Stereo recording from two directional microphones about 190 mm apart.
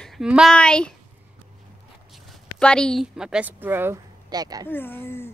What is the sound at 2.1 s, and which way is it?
A woman's voice, 5° left (ahead or behind).